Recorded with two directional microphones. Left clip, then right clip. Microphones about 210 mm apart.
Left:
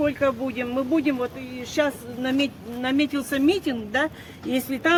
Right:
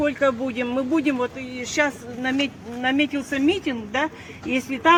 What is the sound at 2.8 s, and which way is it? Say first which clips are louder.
Speech: right 2 dB; 10° left (ahead or behind).